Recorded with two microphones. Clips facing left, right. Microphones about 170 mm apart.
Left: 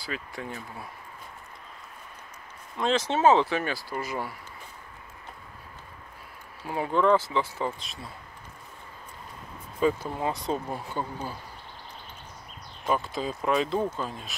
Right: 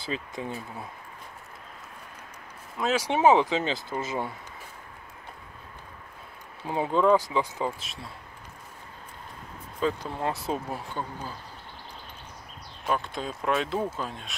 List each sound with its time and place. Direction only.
0.0 s speech: 20° right (ahead or behind)
2.8 s speech: 10° right (ahead or behind)
6.6 s speech: 20° right (ahead or behind)
7.8 s speech: centre (ahead or behind)
9.8 s speech: 5° left (ahead or behind)
11.0 s speech: 10° left (ahead or behind)
12.8 s speech: centre (ahead or behind)